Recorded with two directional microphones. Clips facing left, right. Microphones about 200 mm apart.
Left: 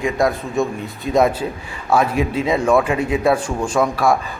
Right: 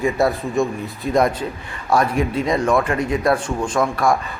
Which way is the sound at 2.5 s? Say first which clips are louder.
Left 4 dB; 5° left (ahead or behind).